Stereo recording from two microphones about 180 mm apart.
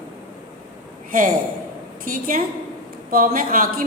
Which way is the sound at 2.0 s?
50° right (ahead or behind).